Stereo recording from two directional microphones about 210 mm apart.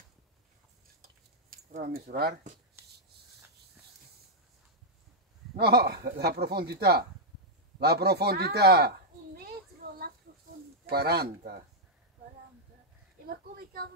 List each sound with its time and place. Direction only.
1.0 s a sound: 40° right (ahead or behind)
5.6 s speech: 50° right (ahead or behind)
10.9 s speech: 50° right (ahead or behind)
13.3 s speech: 45° right (ahead or behind)